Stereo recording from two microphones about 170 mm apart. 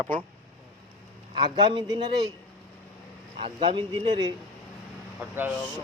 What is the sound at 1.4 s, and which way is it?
Speech, 25° right (ahead or behind).